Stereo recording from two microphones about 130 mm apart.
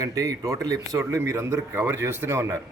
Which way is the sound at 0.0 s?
25° right (ahead or behind).